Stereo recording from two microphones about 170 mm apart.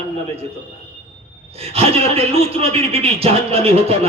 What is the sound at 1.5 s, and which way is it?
Speech, 35° right (ahead or behind).